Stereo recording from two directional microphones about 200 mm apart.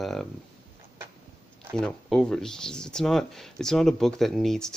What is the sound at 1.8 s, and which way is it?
Speech, 5° left (ahead or behind).